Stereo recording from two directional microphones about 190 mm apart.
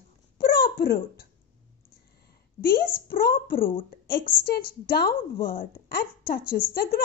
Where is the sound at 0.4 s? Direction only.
55° left (ahead or behind).